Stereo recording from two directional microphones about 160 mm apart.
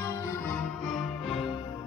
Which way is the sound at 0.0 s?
15° left (ahead or behind).